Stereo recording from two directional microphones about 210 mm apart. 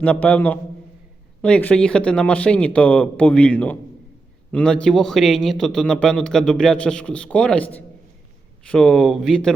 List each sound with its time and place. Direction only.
0.0 s a man's voice: 5° left (ahead or behind)